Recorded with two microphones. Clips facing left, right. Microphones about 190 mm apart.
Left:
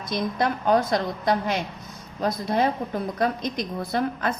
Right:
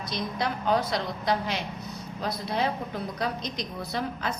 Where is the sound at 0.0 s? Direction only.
50° left (ahead or behind).